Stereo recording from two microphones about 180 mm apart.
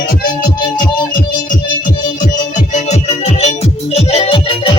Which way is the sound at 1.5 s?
45° left (ahead or behind).